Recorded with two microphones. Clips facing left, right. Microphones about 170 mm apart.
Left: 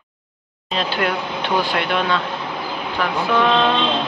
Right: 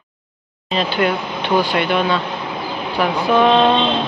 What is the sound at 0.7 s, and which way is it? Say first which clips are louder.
Speech: right 3 dB; centre (ahead or behind).